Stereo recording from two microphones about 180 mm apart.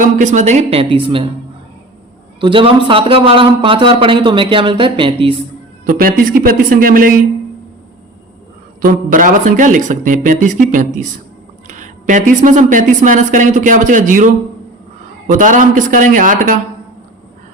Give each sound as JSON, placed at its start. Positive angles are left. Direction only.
{"t": 0.0, "sound": "speech", "side_deg": -45}
{"t": 2.4, "sound": "a man's voice", "side_deg": -30}
{"t": 5.8, "sound": "a woman's voice", "side_deg": -50}
{"t": 8.8, "sound": "a woman's voice", "side_deg": -50}
{"t": 15.3, "sound": "a woman's voice", "side_deg": -45}